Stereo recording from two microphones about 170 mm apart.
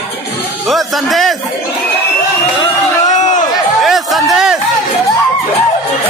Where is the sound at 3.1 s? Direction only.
45° left (ahead or behind).